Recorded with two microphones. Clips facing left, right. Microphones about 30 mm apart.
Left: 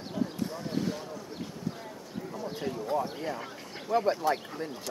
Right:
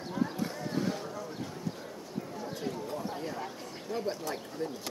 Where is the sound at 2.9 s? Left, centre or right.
Left.